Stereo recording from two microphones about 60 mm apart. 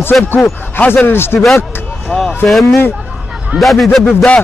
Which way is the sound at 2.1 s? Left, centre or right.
Centre.